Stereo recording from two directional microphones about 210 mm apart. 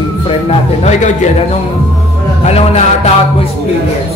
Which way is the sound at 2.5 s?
30° left (ahead or behind).